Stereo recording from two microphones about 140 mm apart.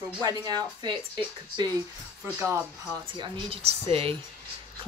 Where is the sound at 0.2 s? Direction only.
25° right (ahead or behind).